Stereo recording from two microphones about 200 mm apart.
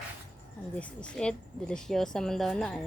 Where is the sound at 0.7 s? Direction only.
5° left (ahead or behind).